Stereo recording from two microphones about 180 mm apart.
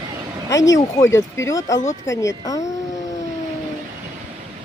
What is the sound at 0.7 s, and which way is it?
Speech, 15° left (ahead or behind).